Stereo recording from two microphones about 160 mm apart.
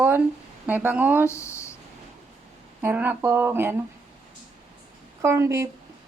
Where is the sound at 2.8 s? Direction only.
10° right (ahead or behind).